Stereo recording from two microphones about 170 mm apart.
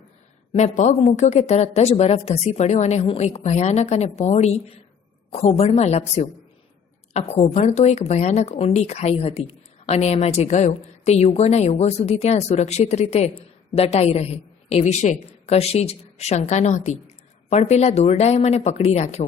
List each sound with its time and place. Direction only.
0.5 s speech: 40° left (ahead or behind)